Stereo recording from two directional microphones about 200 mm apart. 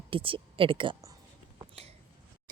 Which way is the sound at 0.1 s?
25° right (ahead or behind).